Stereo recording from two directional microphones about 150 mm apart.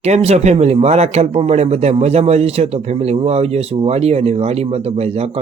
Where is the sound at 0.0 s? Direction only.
45° right (ahead or behind).